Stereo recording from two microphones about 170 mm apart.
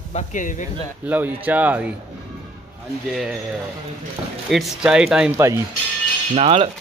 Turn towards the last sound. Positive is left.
turn(degrees=-35)  # may be behind; listen again after turning